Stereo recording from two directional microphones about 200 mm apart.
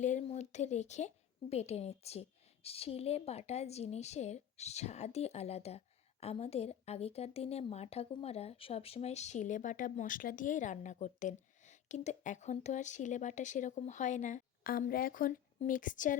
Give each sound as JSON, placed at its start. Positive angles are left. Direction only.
{"t": 0.0, "sound": "speech", "side_deg": 35}